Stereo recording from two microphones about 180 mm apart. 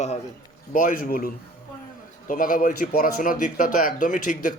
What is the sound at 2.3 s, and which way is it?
Speech, 50° left (ahead or behind).